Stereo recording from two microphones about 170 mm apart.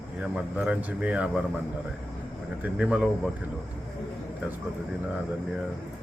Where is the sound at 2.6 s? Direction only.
5° right (ahead or behind).